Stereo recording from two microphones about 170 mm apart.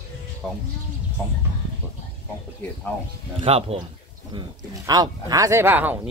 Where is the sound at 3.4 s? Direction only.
35° right (ahead or behind).